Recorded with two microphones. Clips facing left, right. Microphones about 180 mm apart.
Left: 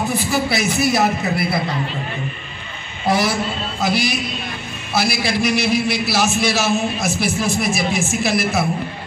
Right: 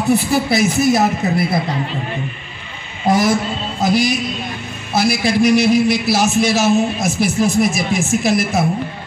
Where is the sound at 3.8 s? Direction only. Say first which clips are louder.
Right 5 dB; 45° right (ahead or behind).